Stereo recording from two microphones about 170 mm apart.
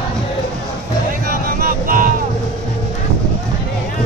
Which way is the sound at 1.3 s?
55° right (ahead or behind).